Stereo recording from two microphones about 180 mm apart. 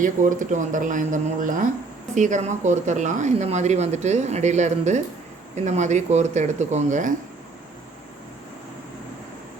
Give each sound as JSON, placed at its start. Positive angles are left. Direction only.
{"t": 0.0, "sound": "speech", "side_deg": -45}